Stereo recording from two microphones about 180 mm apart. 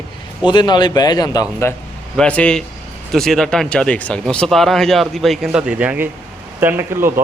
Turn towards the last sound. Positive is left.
turn(degrees=-15)  # may be behind; listen again after turning